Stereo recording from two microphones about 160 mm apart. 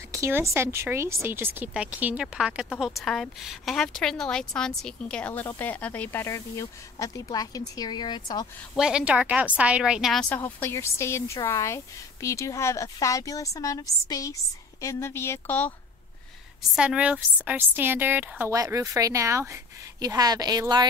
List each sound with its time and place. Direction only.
0.1 s speech: 20° right (ahead or behind); by 8.5 s 25° left (ahead or behind)
8.7 s a woman's voice: 5° right (ahead or behind)
10.3 s speech: 15° left (ahead or behind)
16.7 s a woman's voice: 5° right (ahead or behind); by 20.8 s 25° right (ahead or behind)